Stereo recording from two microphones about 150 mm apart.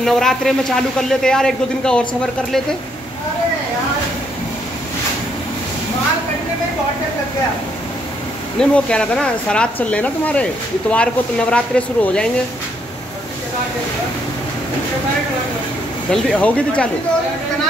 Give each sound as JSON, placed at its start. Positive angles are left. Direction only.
{"t": 0.0, "sound": "a man's voice", "side_deg": 0}
{"t": 8.5, "sound": "speech", "side_deg": 5}
{"t": 16.1, "sound": "speech", "side_deg": 5}